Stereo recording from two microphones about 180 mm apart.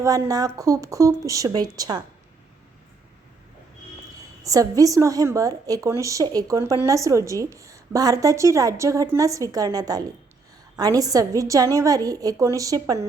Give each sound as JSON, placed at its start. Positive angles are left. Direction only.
{"t": 0.0, "sound": "a woman's voice", "side_deg": -20}
{"t": 4.4, "sound": "a woman's voice", "side_deg": -20}